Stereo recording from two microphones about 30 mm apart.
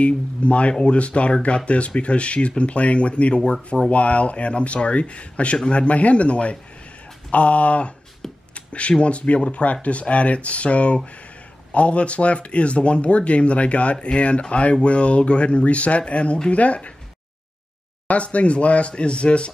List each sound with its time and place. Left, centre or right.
0.0 s speech: left
3.5 s speech: centre
3.9 s speech: left
8.5 s a sound: left
9.0 s speech: left
18.0 s speech: left